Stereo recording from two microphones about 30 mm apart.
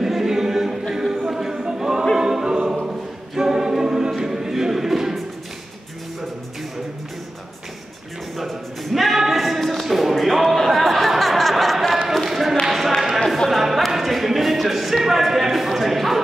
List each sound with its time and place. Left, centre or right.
0.1 s a capella: centre
1.2 s a sound: centre
2.1 s music: centre
2.8 s choir: centre
4.2 s music: centre
8.4 s a sound: centre
10.1 s chatter: centre
12.3 s basketball bounce: centre
12.6 s a sound: centre
13.5 s music: centre